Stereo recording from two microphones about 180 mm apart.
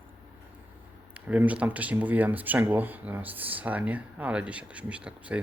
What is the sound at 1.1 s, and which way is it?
Speech, 10° right (ahead or behind).